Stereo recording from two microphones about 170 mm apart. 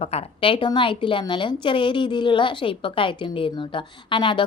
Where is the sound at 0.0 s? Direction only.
35° left (ahead or behind).